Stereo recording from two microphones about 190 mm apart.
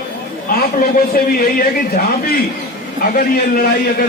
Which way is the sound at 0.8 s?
50° left (ahead or behind).